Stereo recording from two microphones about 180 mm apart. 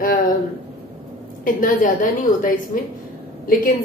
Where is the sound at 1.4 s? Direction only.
50° left (ahead or behind).